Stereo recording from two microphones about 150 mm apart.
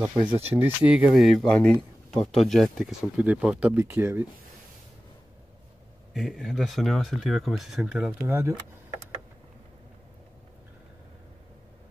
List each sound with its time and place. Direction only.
0.1 s speech: 30° right (ahead or behind)
0.6 s speech: 10° right (ahead or behind)
6.1 s speech: centre (ahead or behind); by 8.5 s 15° right (ahead or behind)